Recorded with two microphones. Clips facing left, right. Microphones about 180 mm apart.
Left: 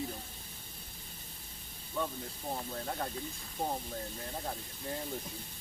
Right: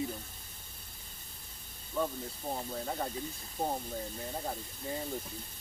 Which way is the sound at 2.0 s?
5° right (ahead or behind).